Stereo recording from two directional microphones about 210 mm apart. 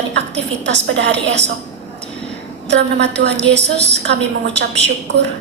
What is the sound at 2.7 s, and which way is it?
A woman's voice, 55° right (ahead or behind).